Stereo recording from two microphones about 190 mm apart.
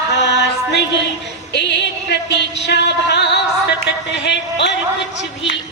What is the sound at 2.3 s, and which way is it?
Music, 65° left (ahead or behind).